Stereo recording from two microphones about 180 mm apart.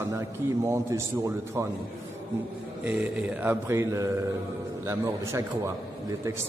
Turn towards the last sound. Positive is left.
turn(degrees=-15)  # may be behind; listen again after turning